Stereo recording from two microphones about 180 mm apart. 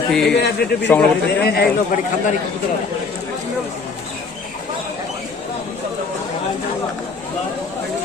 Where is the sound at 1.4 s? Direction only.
60° left (ahead or behind).